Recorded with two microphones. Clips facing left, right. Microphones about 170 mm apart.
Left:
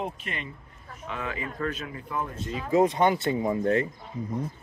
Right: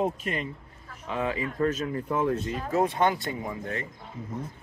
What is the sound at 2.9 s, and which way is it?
Speech, 15° left (ahead or behind).